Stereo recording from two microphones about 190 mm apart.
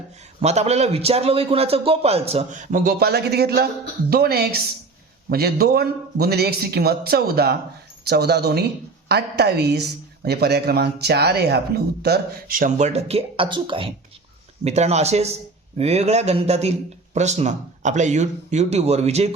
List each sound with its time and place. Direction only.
0.4 s a man's voice: 35° right (ahead or behind)